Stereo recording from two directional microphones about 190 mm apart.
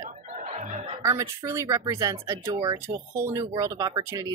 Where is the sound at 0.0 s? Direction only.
40° right (ahead or behind).